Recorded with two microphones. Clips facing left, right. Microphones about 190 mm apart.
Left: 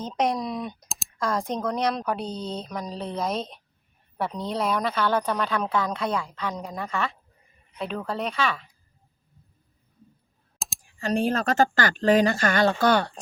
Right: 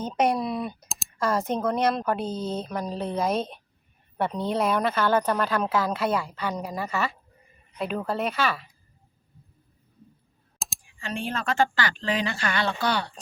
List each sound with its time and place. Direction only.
0.0 s speech: 5° right (ahead or behind)
10.8 s speech: 40° left (ahead or behind)